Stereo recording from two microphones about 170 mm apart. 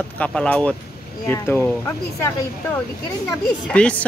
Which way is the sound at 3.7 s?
5° left (ahead or behind).